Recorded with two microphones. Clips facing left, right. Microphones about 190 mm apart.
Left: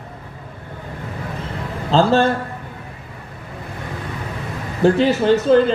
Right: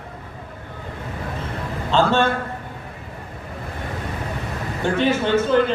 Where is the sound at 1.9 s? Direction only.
35° left (ahead or behind).